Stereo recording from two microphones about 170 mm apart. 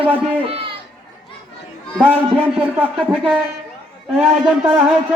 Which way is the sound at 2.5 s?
10° right (ahead or behind).